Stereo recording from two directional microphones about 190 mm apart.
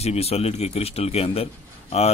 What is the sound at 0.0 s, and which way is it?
A man's voice, 35° left (ahead or behind).